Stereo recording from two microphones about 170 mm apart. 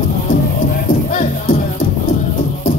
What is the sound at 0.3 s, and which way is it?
Music, 55° left (ahead or behind).